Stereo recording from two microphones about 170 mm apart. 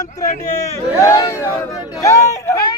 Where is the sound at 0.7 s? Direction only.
15° left (ahead or behind).